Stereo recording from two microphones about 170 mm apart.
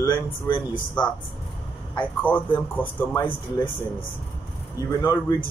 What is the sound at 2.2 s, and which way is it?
Speech, 10° left (ahead or behind).